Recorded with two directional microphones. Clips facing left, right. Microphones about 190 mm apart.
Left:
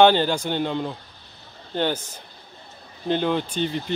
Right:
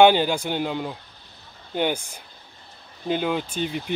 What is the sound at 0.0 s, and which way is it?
Speech, 10° right (ahead or behind).